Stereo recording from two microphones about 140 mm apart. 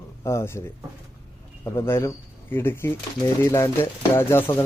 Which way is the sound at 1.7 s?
20° left (ahead or behind).